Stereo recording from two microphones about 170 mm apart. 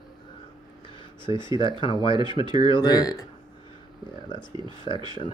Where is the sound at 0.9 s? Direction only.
30° left (ahead or behind).